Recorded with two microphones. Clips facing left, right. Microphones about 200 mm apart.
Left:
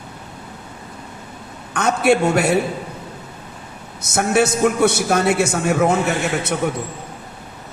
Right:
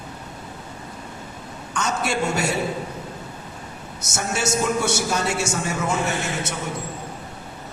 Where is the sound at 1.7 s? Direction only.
60° left (ahead or behind).